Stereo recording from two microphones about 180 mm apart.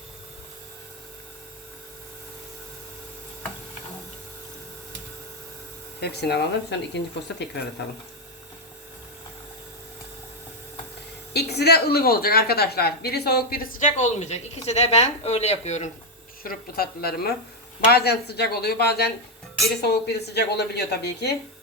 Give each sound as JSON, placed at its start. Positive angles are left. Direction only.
{"t": 6.0, "sound": "a woman's voice", "side_deg": 65}
{"t": 11.3, "sound": "a woman's voice", "side_deg": 65}
{"t": 16.4, "sound": "a woman's voice", "side_deg": 55}